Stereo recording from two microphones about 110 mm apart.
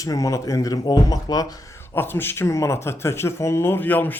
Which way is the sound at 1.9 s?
20° left (ahead or behind).